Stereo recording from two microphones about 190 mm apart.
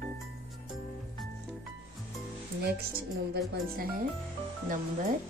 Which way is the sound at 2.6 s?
55° right (ahead or behind).